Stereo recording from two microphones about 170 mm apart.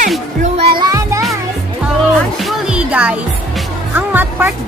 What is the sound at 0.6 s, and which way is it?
Music, 25° right (ahead or behind).